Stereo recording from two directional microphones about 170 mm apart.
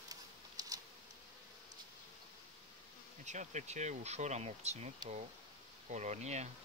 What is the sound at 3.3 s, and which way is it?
Speech, 45° right (ahead or behind).